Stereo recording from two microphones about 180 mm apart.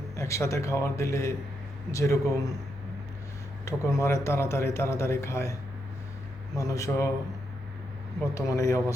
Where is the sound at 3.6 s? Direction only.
15° left (ahead or behind).